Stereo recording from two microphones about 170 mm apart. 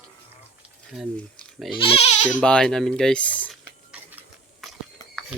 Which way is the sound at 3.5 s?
10° right (ahead or behind).